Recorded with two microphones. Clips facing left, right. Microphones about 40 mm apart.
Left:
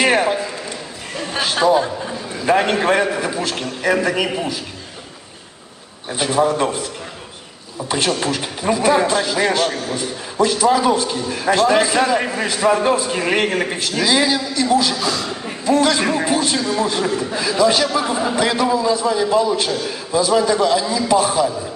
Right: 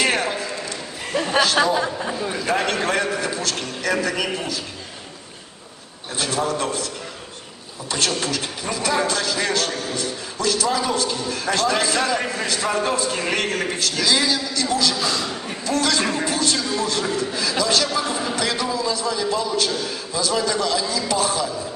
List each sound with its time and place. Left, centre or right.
0.0 s a sound: centre
1.8 s a man's voice: centre
2.4 s a man's voice: centre
6.1 s a man's voice: centre
8.1 s a man's voice: centre
15.0 s a man's voice: centre
15.6 s a man's voice: left